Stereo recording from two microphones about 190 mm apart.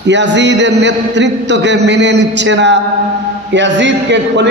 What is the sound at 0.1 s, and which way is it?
A man's voice, 70° right (ahead or behind).